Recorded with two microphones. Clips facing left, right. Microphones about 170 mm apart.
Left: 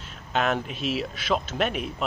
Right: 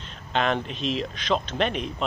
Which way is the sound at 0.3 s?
5° left (ahead or behind).